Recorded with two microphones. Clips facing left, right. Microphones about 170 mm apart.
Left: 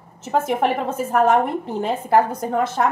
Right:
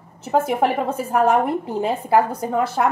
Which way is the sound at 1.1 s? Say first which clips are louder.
Left 1 dB; 5° right (ahead or behind).